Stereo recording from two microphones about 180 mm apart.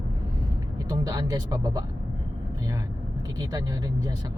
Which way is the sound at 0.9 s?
20° right (ahead or behind).